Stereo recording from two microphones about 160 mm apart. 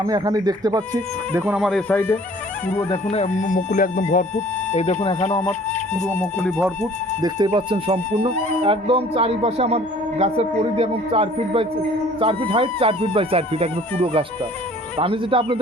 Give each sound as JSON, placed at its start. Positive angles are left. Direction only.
{"t": 0.0, "sound": "speech", "side_deg": -25}
{"t": 1.4, "sound": "speech", "side_deg": -5}
{"t": 1.9, "sound": "speech", "side_deg": 15}
{"t": 3.1, "sound": "speech", "side_deg": 45}
{"t": 5.3, "sound": "speech", "side_deg": 15}
{"t": 7.2, "sound": "speech", "side_deg": -30}